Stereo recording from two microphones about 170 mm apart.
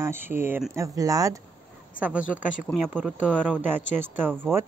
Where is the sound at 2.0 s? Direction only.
5° right (ahead or behind).